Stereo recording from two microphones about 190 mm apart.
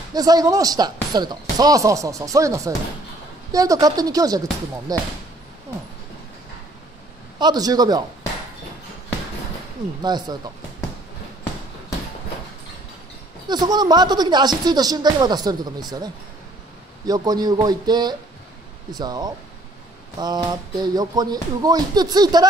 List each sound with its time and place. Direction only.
0.1 s speech: 20° right (ahead or behind)
7.3 s speech: 20° right (ahead or behind)
10.0 s speech: 20° right (ahead or behind)
13.5 s speech: 20° right (ahead or behind)
17.0 s speech: 20° right (ahead or behind)